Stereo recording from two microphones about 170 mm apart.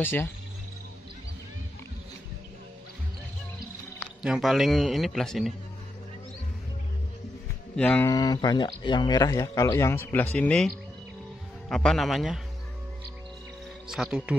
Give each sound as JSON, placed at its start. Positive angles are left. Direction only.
{"t": 0.0, "sound": "speech", "side_deg": 10}
{"t": 4.2, "sound": "a man's voice", "side_deg": 0}
{"t": 7.7, "sound": "speech", "side_deg": 10}
{"t": 8.1, "sound": "speech", "side_deg": 25}
{"t": 11.7, "sound": "a man's voice", "side_deg": 5}
{"t": 13.8, "sound": "speech", "side_deg": -5}